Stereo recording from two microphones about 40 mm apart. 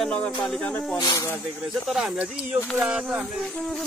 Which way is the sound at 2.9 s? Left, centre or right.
Right.